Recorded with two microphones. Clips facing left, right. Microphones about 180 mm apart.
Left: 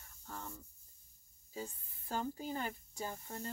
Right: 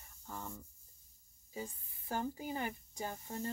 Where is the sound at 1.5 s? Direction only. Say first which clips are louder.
Even; 15° right (ahead or behind).